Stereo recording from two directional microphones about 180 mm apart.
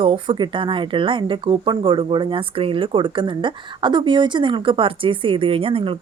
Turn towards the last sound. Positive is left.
turn(degrees=-30)  # may be behind; listen again after turning